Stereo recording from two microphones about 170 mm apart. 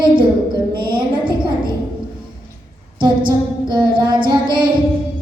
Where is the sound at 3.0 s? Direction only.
25° right (ahead or behind).